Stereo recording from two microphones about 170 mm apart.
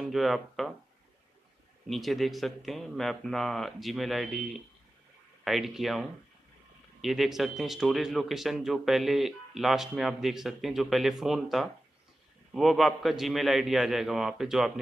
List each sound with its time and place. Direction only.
0.0 s speech: centre (ahead or behind)
1.9 s a man's voice: centre (ahead or behind)